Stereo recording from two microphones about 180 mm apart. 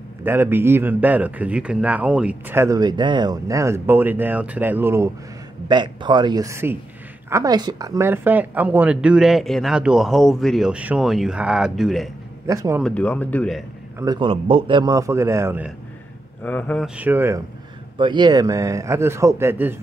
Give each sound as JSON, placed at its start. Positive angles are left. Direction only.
{"t": 0.2, "sound": "a man's voice", "side_deg": -10}
{"t": 5.7, "sound": "a man's voice", "side_deg": -25}
{"t": 12.4, "sound": "a man's voice", "side_deg": -15}
{"t": 12.8, "sound": "speech", "side_deg": 10}
{"t": 13.9, "sound": "a man's voice", "side_deg": -25}
{"t": 16.4, "sound": "speech", "side_deg": 10}
{"t": 16.8, "sound": "a man's voice", "side_deg": -10}
{"t": 17.9, "sound": "a man's voice", "side_deg": -25}